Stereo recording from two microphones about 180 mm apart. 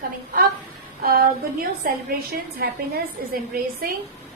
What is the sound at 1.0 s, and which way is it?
A woman's voice, 55° right (ahead or behind).